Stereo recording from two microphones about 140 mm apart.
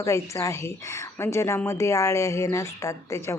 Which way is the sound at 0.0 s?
25° left (ahead or behind).